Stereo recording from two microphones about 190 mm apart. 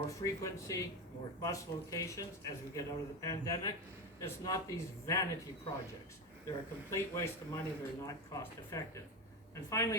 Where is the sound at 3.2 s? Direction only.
15° left (ahead or behind).